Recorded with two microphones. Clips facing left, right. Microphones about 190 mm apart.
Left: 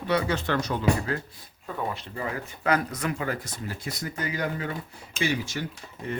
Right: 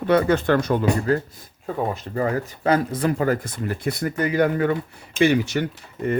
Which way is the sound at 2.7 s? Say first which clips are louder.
Right 6 dB; 30° right (ahead or behind).